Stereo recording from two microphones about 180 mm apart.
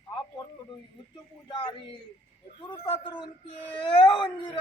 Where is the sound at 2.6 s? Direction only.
25° left (ahead or behind).